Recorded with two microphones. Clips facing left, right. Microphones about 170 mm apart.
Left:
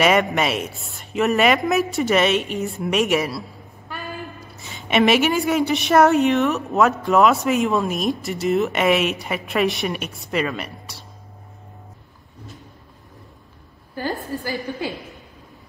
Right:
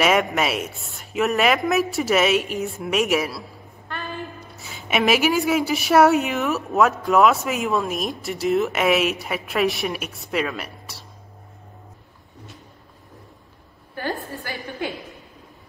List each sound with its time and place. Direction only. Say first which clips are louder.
0.0 s a woman's voice: left 2 dB; centre (ahead or behind)
4.6 s a woman's voice: left 3 dB; 5° right (ahead or behind)
14.3 s a woman's voice: left 6 dB; 40° left (ahead or behind)